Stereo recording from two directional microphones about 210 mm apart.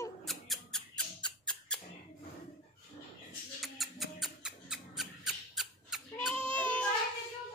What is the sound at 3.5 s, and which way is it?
Mouse, centre (ahead or behind).